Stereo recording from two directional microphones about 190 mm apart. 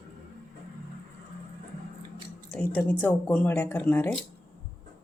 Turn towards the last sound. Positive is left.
turn(degrees=10)  # may be behind; listen again after turning